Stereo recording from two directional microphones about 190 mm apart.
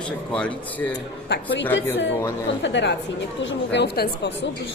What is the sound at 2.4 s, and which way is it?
Speech, 70° left (ahead or behind).